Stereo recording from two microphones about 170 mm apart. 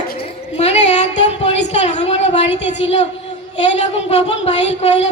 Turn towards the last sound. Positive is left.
turn(degrees=40)  # may be behind; listen again after turning